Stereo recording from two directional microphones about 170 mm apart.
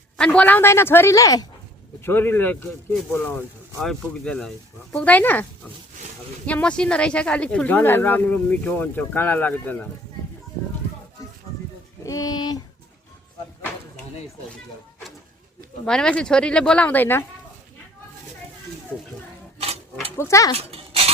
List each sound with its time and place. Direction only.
0.2 s speech: 5° left (ahead or behind)
12.0 s speech: 20° left (ahead or behind)
15.9 s speech: 5° left (ahead or behind)
19.5 s a sound: 40° right (ahead or behind)
20.1 s speech: 15° left (ahead or behind)
20.6 s a sound: 35° right (ahead or behind)